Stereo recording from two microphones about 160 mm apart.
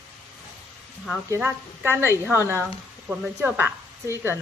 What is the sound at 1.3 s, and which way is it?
A woman's voice, 15° right (ahead or behind).